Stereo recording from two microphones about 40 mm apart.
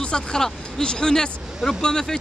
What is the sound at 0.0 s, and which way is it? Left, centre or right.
Speech, centre.